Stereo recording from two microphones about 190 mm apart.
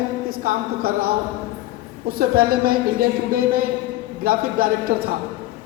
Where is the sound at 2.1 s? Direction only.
50° right (ahead or behind).